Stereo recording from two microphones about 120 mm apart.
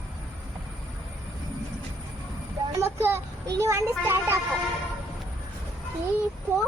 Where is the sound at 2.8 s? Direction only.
20° right (ahead or behind).